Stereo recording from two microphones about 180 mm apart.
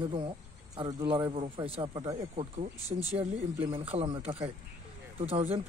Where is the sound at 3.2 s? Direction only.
30° right (ahead or behind).